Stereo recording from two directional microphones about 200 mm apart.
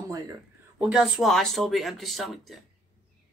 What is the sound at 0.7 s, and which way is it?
Speech, 5° right (ahead or behind).